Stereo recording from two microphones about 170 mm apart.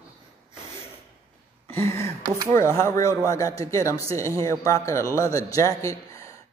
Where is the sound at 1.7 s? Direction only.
15° left (ahead or behind).